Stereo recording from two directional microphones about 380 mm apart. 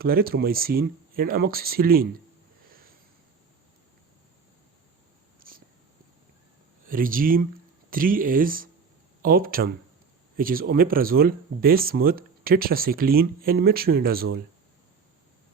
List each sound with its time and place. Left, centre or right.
0.0 s speech: right
5.4 s whispering: right
6.8 s speech: right